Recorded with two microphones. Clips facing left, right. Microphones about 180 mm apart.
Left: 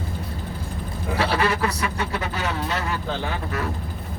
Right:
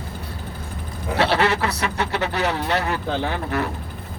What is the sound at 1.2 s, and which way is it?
Speech, 70° right (ahead or behind).